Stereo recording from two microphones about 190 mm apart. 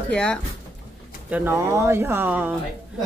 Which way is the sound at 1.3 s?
10° right (ahead or behind).